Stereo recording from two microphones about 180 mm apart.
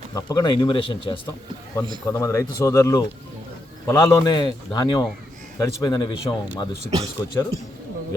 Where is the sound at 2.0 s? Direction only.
15° left (ahead or behind).